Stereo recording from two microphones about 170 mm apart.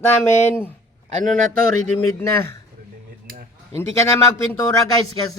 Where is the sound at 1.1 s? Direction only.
50° right (ahead or behind).